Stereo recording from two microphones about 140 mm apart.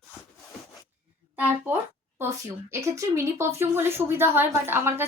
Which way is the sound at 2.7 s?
20° right (ahead or behind).